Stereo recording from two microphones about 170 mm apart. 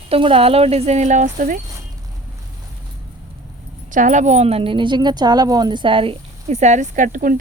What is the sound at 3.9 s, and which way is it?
Speech, 45° right (ahead or behind).